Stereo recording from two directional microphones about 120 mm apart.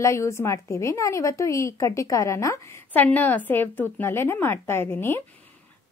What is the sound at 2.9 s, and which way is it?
A woman's voice, 15° left (ahead or behind).